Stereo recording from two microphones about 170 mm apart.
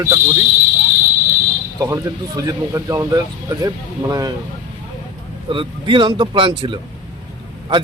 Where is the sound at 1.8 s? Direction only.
20° right (ahead or behind).